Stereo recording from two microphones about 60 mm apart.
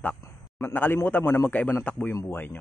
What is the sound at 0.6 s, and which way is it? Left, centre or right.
Speech, left.